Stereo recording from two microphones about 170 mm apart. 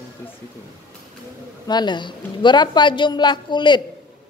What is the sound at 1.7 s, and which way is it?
A man's voice, 25° left (ahead or behind).